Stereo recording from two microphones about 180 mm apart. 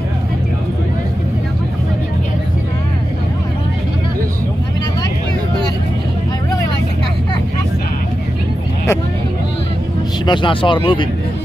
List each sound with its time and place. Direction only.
10.2 s speech: 25° left (ahead or behind)